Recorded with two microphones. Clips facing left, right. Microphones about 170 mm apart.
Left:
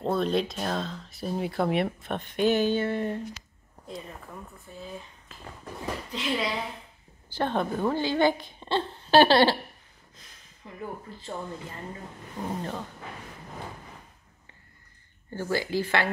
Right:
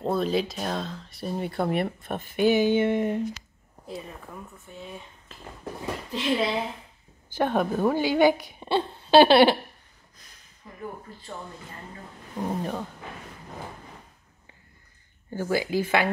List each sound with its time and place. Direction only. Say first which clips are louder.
0.0 s speech: right 1 dB; centre (ahead or behind)
6.0 s speech: right 5 dB; 25° right (ahead or behind)
7.3 s speech: right 3 dB; 10° right (ahead or behind)
12.4 s speech: right 3 dB; 10° right (ahead or behind)
15.3 s speech: right 2 dB; 15° right (ahead or behind)